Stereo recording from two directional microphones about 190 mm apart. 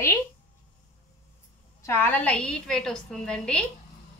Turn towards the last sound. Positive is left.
turn(degrees=5)  # may be behind; listen again after turning